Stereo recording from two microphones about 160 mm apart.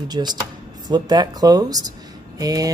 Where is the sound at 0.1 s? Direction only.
25° right (ahead or behind).